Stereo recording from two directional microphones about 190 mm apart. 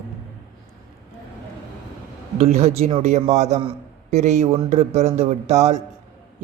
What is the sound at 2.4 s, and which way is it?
Speech, 35° right (ahead or behind).